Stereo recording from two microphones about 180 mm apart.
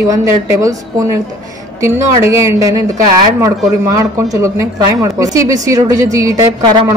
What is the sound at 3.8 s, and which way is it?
A woman's voice, 15° right (ahead or behind).